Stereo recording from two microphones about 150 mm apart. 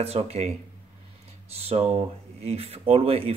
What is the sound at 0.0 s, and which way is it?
Speech, 40° right (ahead or behind).